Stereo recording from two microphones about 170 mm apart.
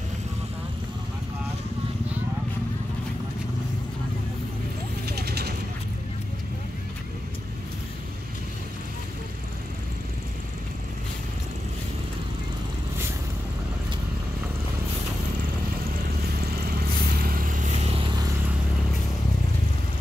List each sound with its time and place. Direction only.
5.0 s vehicle: 70° right (ahead or behind)
16.3 s vehicle: 65° right (ahead or behind)